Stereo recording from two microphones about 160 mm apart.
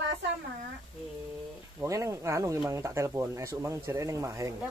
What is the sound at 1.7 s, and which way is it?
Speech, 20° right (ahead or behind).